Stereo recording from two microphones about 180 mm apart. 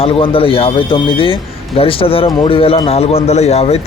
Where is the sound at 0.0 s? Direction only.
30° left (ahead or behind).